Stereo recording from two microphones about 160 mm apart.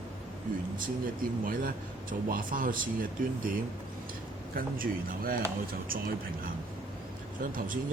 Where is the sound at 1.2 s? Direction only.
60° right (ahead or behind).